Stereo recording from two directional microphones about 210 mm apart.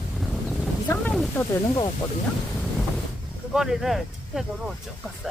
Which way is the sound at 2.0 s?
20° left (ahead or behind).